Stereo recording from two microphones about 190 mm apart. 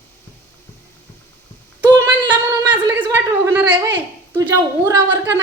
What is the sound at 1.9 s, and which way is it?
Female singing, 20° right (ahead or behind).